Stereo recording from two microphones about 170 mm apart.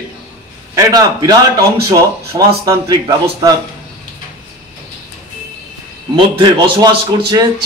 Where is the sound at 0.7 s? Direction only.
20° right (ahead or behind).